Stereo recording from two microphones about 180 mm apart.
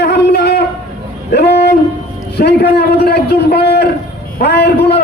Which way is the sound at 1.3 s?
65° left (ahead or behind).